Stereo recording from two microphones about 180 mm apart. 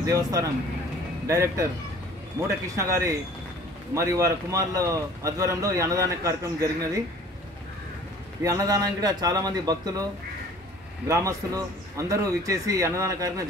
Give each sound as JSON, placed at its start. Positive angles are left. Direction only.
{"t": 0.0, "sound": "a man's voice", "side_deg": -20}
{"t": 2.7, "sound": "a man's voice", "side_deg": -15}
{"t": 8.4, "sound": "a man's voice", "side_deg": -20}
{"t": 11.1, "sound": "a man's voice", "side_deg": -15}